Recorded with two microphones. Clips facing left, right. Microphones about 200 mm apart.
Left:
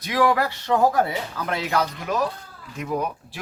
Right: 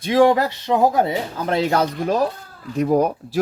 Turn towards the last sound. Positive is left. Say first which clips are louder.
# right 9 dB
turn(degrees=-45)  # may be behind; listen again after turning